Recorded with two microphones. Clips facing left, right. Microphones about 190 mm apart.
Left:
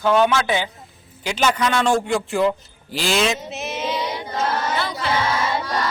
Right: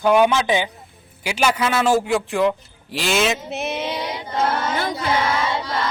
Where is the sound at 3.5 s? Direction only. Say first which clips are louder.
Right 1 dB; 60° right (ahead or behind).